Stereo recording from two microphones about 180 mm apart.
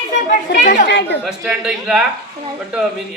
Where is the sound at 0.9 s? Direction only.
70° left (ahead or behind).